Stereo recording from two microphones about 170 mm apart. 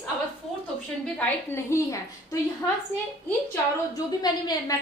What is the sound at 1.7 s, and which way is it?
A woman's voice, 20° left (ahead or behind).